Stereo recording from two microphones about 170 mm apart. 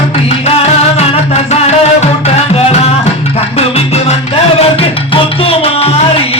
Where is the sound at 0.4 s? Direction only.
35° left (ahead or behind).